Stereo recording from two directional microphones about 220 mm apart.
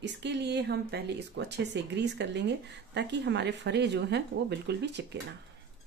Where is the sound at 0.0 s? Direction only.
50° right (ahead or behind).